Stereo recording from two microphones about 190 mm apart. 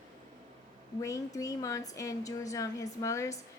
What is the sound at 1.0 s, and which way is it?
A woman's voice, 15° left (ahead or behind).